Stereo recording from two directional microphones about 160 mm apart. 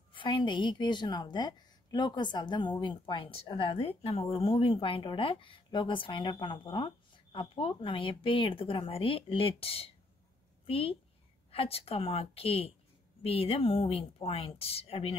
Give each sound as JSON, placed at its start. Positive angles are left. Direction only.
{"t": 0.1, "sound": "a woman's voice", "side_deg": 30}